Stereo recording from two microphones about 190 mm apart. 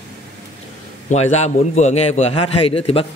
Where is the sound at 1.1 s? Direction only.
35° left (ahead or behind).